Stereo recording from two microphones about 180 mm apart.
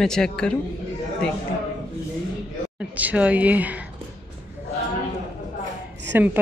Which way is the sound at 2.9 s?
10° right (ahead or behind).